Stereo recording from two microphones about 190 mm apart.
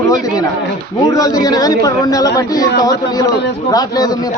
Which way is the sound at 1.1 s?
20° left (ahead or behind).